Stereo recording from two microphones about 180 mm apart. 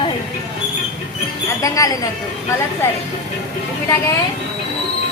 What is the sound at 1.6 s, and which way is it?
Speech, 20° left (ahead or behind).